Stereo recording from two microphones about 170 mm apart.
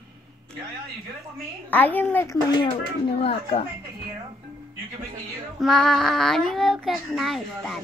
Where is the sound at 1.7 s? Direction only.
10° left (ahead or behind).